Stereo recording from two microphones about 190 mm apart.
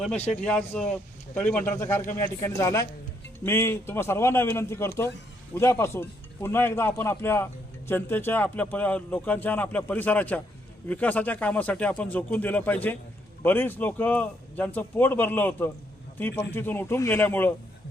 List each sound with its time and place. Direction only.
0.4 s a man's voice: 10° left (ahead or behind)